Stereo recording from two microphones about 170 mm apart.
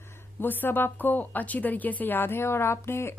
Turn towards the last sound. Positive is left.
turn(degrees=15)  # may be behind; listen again after turning